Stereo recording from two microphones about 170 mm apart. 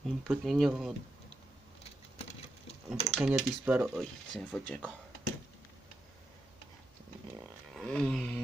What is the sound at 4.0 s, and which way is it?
Speech, centre (ahead or behind).